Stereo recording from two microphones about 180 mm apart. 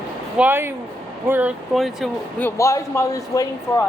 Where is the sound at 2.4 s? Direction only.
15° left (ahead or behind).